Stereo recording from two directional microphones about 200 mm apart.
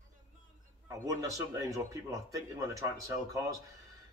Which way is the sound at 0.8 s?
15° right (ahead or behind).